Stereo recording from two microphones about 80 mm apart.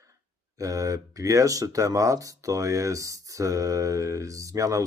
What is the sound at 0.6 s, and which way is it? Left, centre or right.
Speech, right.